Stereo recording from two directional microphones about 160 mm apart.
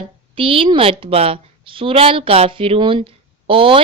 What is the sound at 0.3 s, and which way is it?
A woman's voice, 35° right (ahead or behind).